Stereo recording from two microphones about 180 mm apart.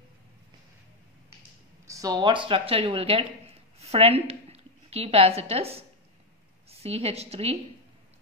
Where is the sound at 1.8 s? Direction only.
20° right (ahead or behind).